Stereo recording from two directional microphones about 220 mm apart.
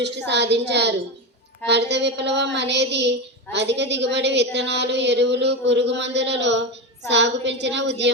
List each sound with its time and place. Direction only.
0.3 s a woman's voice: 50° right (ahead or behind)